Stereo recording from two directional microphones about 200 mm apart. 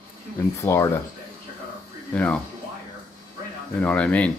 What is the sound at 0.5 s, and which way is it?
Speech, 15° left (ahead or behind).